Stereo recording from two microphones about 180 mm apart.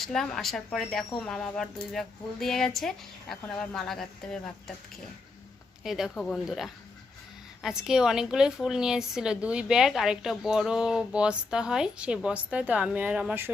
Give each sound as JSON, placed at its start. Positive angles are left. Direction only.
{"t": 0.0, "sound": "speech", "side_deg": 0}
{"t": 5.8, "sound": "speech", "side_deg": 0}